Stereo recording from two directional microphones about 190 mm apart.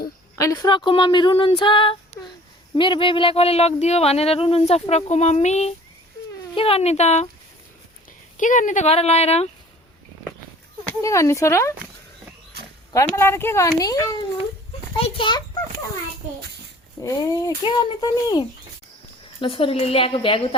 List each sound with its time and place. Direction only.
0.3 s speech: 15° left (ahead or behind); by 7.3 s 35° left (ahead or behind)
8.4 s speech: 40° left (ahead or behind)
11.0 s speech: 15° left (ahead or behind)
12.9 s a child's voice: 15° left (ahead or behind)
17.0 s speech: 20° left (ahead or behind)